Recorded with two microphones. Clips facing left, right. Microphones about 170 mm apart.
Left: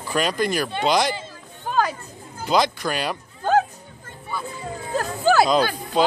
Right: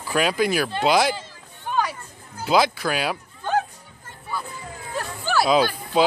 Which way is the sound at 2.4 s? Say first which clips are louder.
Right 1 dB; 5° right (ahead or behind).